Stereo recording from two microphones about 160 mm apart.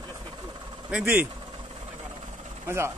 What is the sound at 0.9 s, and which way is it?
Speech, 5° right (ahead or behind).